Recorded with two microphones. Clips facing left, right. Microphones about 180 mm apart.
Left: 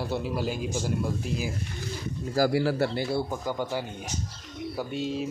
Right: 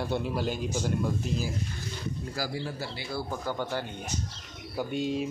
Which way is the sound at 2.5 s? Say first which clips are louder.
Left 10 dB; 70° left (ahead or behind).